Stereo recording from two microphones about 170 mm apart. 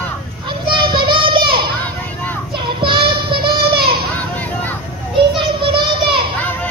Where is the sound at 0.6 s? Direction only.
30° right (ahead or behind).